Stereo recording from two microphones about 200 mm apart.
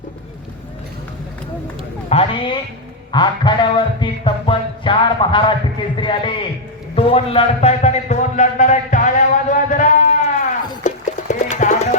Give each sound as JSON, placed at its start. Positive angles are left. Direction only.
{"t": 2.0, "sound": "music", "side_deg": 30}
{"t": 6.9, "sound": "speech", "side_deg": 30}
{"t": 10.8, "sound": "music", "side_deg": 35}